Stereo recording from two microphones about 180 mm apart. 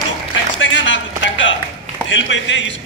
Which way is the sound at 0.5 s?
90° left.